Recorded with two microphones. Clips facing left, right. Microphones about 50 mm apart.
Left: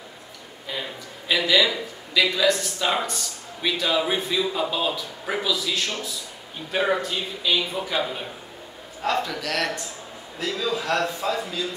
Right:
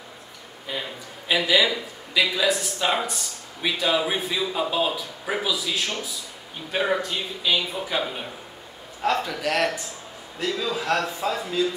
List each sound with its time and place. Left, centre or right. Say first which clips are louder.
1.3 s a man's voice: even; centre
9.4 s a man's voice: right 3 dB; centre
10.4 s a man's voice: even; centre